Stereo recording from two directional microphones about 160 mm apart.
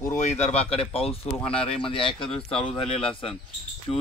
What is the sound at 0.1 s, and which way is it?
Speech, 45° left (ahead or behind).